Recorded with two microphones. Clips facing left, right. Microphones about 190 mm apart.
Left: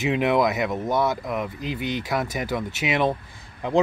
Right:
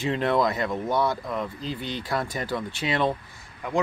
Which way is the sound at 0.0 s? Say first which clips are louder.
Left 3 dB; 10° left (ahead or behind).